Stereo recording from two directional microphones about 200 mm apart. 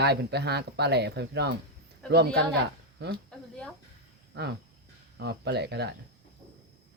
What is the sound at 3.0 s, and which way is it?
Speech, 55° right (ahead or behind).